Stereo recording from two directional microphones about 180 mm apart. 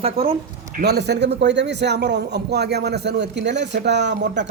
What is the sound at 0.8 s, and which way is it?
A man's voice, 65° right (ahead or behind).